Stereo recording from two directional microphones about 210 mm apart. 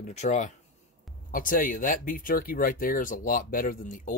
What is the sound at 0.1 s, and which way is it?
Speech, 35° left (ahead or behind).